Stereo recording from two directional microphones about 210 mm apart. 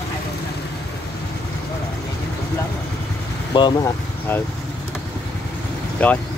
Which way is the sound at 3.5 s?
20° left (ahead or behind).